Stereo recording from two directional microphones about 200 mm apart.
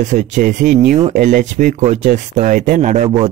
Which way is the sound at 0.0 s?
40° right (ahead or behind).